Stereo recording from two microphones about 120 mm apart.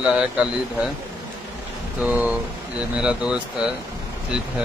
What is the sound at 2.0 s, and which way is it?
Speech, 10° right (ahead or behind).